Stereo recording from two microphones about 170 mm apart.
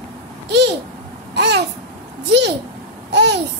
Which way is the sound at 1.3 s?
90° right.